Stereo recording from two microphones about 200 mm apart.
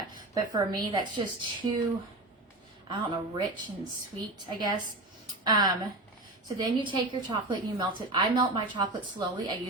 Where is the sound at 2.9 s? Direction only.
25° right (ahead or behind).